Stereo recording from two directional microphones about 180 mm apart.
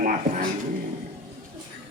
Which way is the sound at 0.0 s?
50° right (ahead or behind).